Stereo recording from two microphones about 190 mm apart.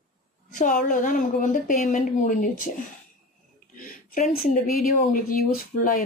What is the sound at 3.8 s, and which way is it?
Speech, 45° left (ahead or behind).